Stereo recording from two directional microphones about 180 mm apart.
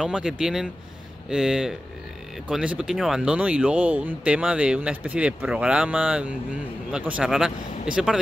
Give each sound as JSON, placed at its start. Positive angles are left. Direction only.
{"t": 0.0, "sound": "speech", "side_deg": -5}